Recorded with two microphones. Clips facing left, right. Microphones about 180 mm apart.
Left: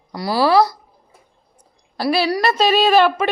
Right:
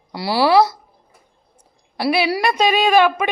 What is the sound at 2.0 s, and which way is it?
Speech, 15° right (ahead or behind).